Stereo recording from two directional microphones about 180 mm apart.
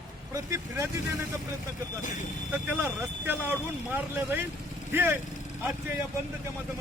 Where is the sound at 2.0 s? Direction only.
45° left (ahead or behind).